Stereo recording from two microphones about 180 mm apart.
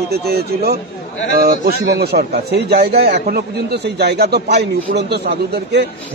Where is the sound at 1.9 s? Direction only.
60° right (ahead or behind).